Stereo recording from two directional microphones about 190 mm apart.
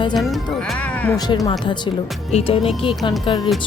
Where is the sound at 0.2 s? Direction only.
Centre (ahead or behind).